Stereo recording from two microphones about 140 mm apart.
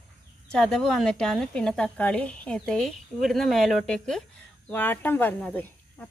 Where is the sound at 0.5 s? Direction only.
5° left (ahead or behind).